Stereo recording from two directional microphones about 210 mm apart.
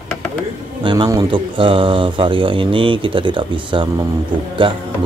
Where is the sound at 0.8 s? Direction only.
20° right (ahead or behind).